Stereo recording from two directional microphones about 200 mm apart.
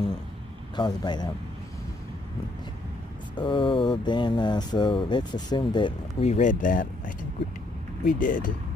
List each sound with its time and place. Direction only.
0.7 s speech: 20° left (ahead or behind)
3.3 s speech: 25° left (ahead or behind); by 8.5 s 40° left (ahead or behind)